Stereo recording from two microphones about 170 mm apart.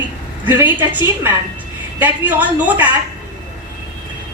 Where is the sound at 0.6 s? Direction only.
10° right (ahead or behind).